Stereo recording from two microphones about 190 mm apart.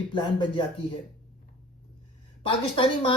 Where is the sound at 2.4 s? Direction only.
25° left (ahead or behind).